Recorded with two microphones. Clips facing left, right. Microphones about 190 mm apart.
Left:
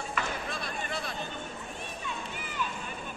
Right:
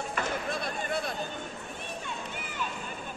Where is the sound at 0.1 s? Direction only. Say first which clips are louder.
Right 2 dB; 50° right (ahead or behind).